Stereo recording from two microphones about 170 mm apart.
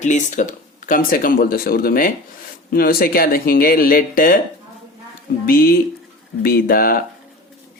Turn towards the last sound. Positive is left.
turn(degrees=60)  # may be behind; listen again after turning